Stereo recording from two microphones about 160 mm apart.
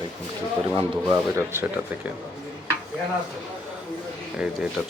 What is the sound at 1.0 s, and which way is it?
Speech, 15° right (ahead or behind).